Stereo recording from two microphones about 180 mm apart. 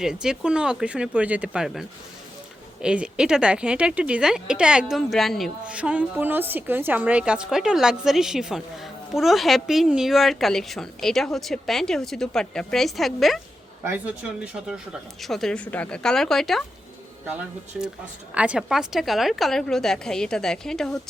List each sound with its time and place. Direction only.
0.0 s speech: 5° right (ahead or behind)
13.8 s speech: 10° right (ahead or behind)
18.3 s speech: 5° right (ahead or behind)